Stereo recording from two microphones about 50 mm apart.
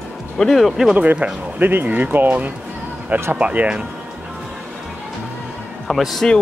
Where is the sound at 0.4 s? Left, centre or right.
Centre.